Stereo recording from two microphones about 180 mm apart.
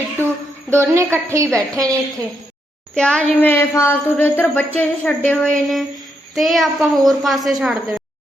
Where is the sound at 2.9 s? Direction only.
5° left (ahead or behind).